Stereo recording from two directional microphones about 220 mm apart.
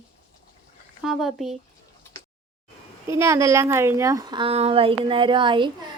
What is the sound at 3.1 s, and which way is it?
A woman's voice, 15° right (ahead or behind).